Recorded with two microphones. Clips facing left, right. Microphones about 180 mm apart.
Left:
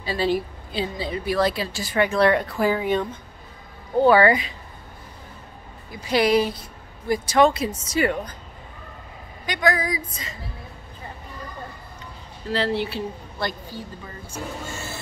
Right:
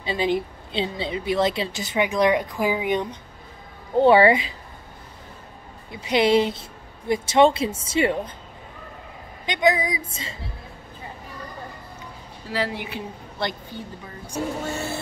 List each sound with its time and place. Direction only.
0.0 s a woman's voice: 20° right (ahead or behind)
5.9 s a woman's voice: 25° right (ahead or behind)
9.5 s a woman's voice: 20° right (ahead or behind)
12.4 s speech: 10° right (ahead or behind)
14.7 s a sound: 60° right (ahead or behind)